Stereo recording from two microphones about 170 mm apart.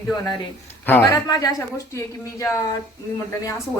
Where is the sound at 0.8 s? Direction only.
15° left (ahead or behind).